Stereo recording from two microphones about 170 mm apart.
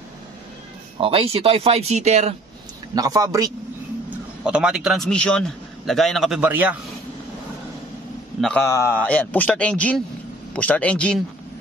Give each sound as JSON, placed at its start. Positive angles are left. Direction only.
{"t": 1.0, "sound": "speech", "side_deg": -35}
{"t": 2.9, "sound": "a man's voice", "side_deg": -20}
{"t": 4.5, "sound": "a man's voice", "side_deg": -5}
{"t": 8.4, "sound": "a man's voice", "side_deg": 5}
{"t": 8.6, "sound": "a man's voice", "side_deg": 15}